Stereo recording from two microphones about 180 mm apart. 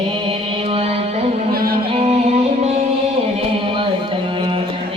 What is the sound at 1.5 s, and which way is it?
Music, 55° right (ahead or behind).